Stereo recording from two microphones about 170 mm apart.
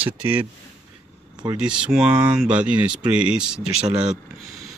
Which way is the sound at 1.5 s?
5° right (ahead or behind).